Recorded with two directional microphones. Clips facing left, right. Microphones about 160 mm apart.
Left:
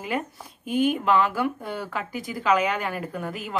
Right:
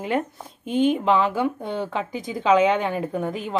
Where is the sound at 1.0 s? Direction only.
20° right (ahead or behind).